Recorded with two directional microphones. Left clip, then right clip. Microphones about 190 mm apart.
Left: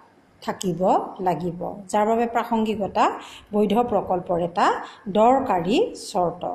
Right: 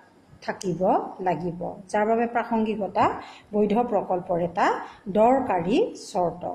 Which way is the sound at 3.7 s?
20° left (ahead or behind).